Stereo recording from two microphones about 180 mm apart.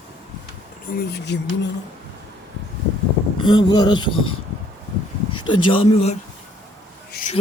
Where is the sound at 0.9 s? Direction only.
70° left (ahead or behind).